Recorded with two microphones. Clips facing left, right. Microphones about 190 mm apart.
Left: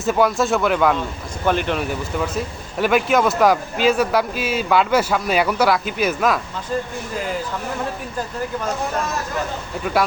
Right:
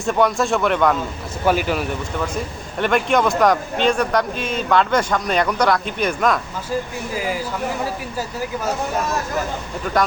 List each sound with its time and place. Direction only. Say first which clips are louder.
0.0 s speech: even; centre (ahead or behind)